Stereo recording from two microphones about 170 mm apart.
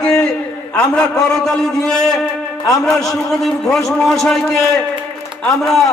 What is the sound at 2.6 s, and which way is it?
Speech, 20° left (ahead or behind).